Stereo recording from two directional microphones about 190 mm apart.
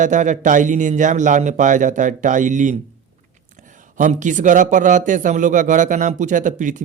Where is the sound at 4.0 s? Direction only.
40° right (ahead or behind).